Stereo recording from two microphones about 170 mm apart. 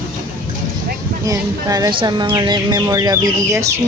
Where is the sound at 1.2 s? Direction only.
20° right (ahead or behind).